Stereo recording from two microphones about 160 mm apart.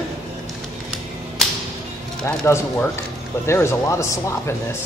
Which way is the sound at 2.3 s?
15° left (ahead or behind).